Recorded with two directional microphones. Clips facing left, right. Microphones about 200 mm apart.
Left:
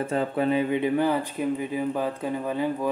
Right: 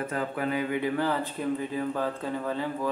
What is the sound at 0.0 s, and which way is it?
A man's voice, 25° left (ahead or behind).